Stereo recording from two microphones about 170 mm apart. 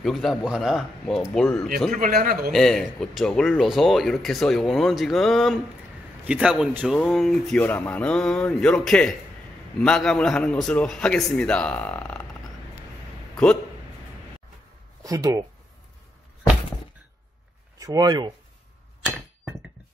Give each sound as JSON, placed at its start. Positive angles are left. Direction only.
{"t": 0.0, "sound": "speech", "side_deg": 0}
{"t": 1.9, "sound": "a man's voice", "side_deg": -55}
{"t": 2.5, "sound": "speech", "side_deg": 0}
{"t": 13.4, "sound": "a man's voice", "side_deg": 5}
{"t": 15.0, "sound": "speech", "side_deg": -20}
{"t": 17.7, "sound": "speech", "side_deg": -20}